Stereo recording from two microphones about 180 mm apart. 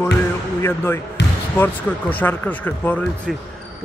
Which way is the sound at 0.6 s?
15° left (ahead or behind).